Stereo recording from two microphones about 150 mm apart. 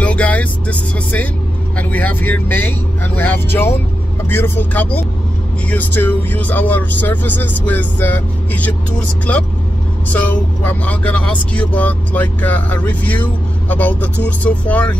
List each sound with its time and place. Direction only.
0.0 s music: 10° left (ahead or behind)
1.8 s speech: 10° left (ahead or behind)
10.0 s speech: 10° left (ahead or behind)